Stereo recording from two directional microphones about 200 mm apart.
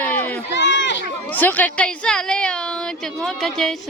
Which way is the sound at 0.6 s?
65° left (ahead or behind).